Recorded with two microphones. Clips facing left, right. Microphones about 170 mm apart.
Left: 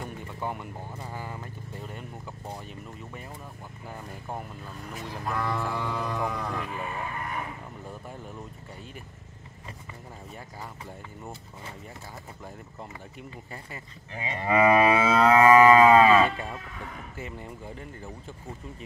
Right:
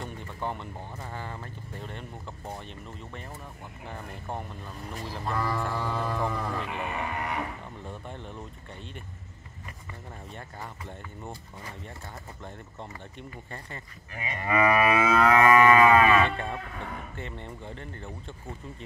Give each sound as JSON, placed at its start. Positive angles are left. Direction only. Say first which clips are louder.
{"t": 0.0, "sound": "speech", "louder": "even", "side_deg": 10}
{"t": 4.9, "sound": "speech", "louder": "even", "side_deg": 0}
{"t": 5.8, "sound": "speech", "louder": "even", "side_deg": 15}
{"t": 6.0, "sound": "speech", "louder": "right 1 dB", "side_deg": -5}
{"t": 6.7, "sound": "sheep", "louder": "right 2 dB", "side_deg": -75}
{"t": 7.9, "sound": "speech", "louder": "right 1 dB", "side_deg": 5}
{"t": 14.1, "sound": "moo", "louder": "left 3 dB", "side_deg": 25}
{"t": 16.3, "sound": "speech", "louder": "right 1 dB", "side_deg": 5}